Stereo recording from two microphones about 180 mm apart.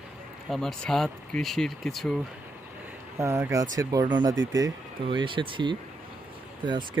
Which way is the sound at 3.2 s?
15° right (ahead or behind).